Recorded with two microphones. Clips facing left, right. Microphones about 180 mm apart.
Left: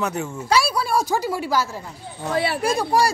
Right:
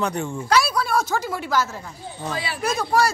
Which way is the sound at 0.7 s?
10° left (ahead or behind).